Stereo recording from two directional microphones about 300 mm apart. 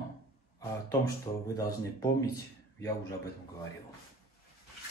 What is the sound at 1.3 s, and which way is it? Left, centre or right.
Speech, centre.